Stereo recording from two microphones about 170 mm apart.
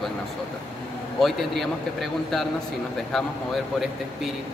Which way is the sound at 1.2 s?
Centre (ahead or behind).